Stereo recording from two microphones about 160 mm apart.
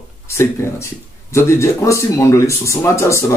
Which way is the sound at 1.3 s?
20° left (ahead or behind).